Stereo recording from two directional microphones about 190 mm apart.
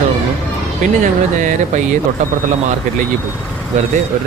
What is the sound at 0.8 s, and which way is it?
Speech, 40° right (ahead or behind).